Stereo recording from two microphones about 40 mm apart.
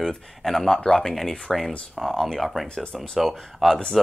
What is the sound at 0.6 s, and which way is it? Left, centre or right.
Speech, centre.